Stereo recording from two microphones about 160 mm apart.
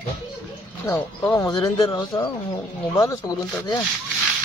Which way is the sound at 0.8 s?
15° left (ahead or behind).